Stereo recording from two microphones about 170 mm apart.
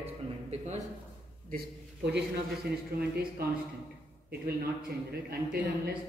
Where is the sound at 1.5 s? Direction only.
70° right (ahead or behind).